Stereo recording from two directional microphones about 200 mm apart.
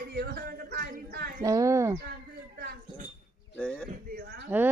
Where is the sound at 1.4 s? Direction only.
15° right (ahead or behind).